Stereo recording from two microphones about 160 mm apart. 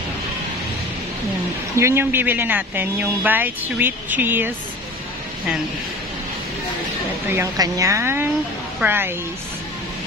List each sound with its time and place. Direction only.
1.8 s speech: 15° right (ahead or behind)
7.2 s speech: 20° right (ahead or behind)